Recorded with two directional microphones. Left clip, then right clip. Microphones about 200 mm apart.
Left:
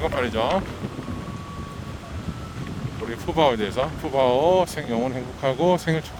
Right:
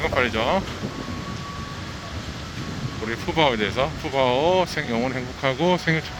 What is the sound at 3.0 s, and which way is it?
Speech, 25° left (ahead or behind).